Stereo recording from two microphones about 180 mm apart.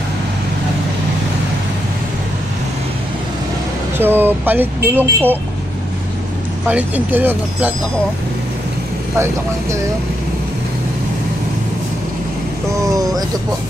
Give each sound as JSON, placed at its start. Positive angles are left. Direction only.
{"t": 4.0, "sound": "speech", "side_deg": -10}
{"t": 6.7, "sound": "speech", "side_deg": -10}
{"t": 12.8, "sound": "speech", "side_deg": -20}